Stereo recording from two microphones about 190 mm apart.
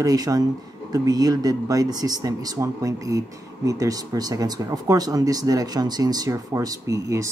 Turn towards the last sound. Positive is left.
turn(degrees=-15)  # may be behind; listen again after turning